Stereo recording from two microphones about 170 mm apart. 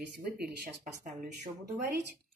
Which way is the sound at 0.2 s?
65° right (ahead or behind).